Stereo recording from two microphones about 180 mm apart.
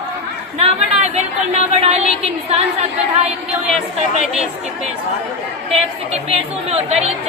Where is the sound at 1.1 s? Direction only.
40° right (ahead or behind).